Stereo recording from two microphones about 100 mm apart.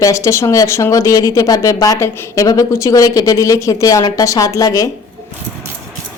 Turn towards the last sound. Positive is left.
turn(degrees=35)  # may be behind; listen again after turning